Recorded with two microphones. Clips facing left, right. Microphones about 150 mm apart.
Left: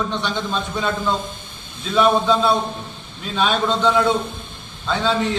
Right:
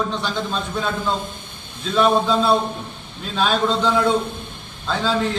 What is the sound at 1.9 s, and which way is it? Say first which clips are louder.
A man's voice: left 1 dB; centre (ahead or behind).